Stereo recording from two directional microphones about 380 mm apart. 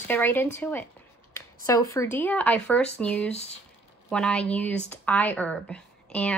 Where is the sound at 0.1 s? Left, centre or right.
Centre.